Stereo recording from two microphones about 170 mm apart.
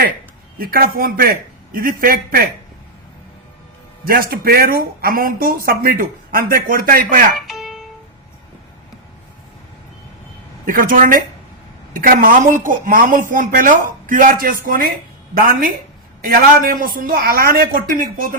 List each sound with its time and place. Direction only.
0.6 s speech: 60° right (ahead or behind)
4.0 s speech: 60° right (ahead or behind)
7.3 s music: centre (ahead or behind)
10.7 s speech: 55° right (ahead or behind)